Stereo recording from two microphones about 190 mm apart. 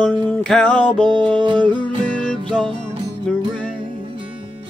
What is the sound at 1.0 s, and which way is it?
Music, 25° right (ahead or behind).